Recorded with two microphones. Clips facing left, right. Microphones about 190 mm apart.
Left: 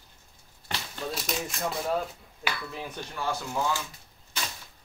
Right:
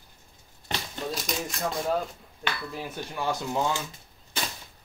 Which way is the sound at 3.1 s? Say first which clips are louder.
Right 3 dB; 20° right (ahead or behind).